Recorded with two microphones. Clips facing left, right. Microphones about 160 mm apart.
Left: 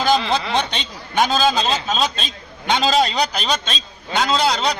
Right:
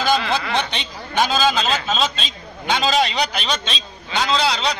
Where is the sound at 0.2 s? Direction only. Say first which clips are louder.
Left 1 dB; 25° left (ahead or behind).